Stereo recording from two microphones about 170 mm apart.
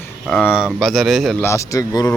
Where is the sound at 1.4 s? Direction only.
15° left (ahead or behind).